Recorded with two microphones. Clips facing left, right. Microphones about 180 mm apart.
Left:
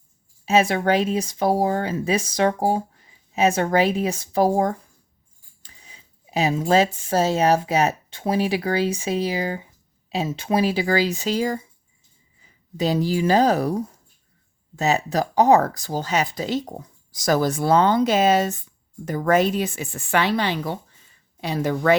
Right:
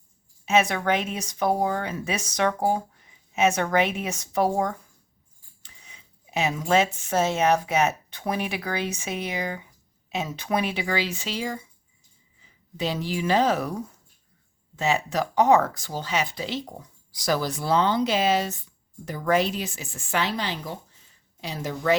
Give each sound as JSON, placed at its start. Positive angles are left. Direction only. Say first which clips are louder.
{"t": 0.4, "sound": "a woman's voice", "louder": "left 3 dB", "side_deg": 30}